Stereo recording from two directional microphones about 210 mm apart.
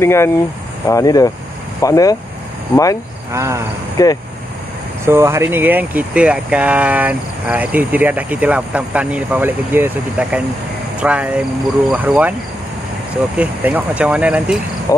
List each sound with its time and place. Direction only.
0.0 s speech: 10° left (ahead or behind)
3.3 s speech: 15° right (ahead or behind)
4.0 s speech: 15° left (ahead or behind)
5.0 s speech: 10° right (ahead or behind)
13.4 s speech: 5° right (ahead or behind)
14.9 s speech: 15° left (ahead or behind)